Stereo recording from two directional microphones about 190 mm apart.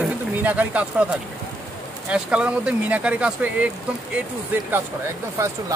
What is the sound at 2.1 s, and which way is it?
Speech, 5° right (ahead or behind).